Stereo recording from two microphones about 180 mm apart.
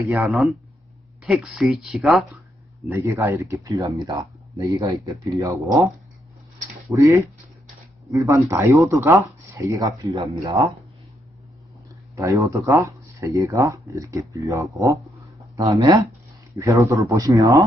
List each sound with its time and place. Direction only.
0.2 s speech: centre (ahead or behind)
2.9 s speech: 15° right (ahead or behind)
6.9 s speech: 15° right (ahead or behind)
12.1 s speech: 15° right (ahead or behind)